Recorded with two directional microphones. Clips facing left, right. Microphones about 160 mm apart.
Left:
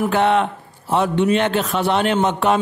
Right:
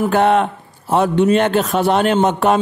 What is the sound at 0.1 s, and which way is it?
A man's voice, 45° right (ahead or behind).